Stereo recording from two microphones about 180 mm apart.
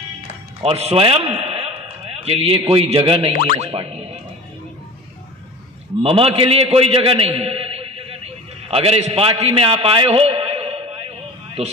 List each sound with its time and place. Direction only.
0.6 s a man's voice: 35° right (ahead or behind)
3.5 s boing: 35° right (ahead or behind)
6.0 s a man's voice: 30° right (ahead or behind)
9.4 s a sound: 30° right (ahead or behind)